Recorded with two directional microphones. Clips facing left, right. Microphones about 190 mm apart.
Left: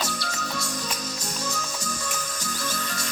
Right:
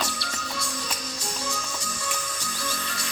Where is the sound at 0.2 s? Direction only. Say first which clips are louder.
Left 2 dB; 45° left (ahead or behind).